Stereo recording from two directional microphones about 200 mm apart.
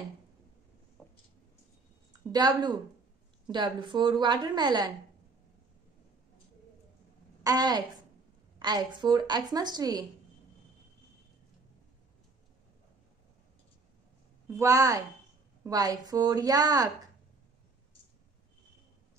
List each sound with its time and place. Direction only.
1.0 s a sound: centre (ahead or behind)
2.3 s a woman's voice: 20° right (ahead or behind)
7.4 s a woman's voice: 20° right (ahead or behind)
14.6 s a woman's voice: 15° right (ahead or behind)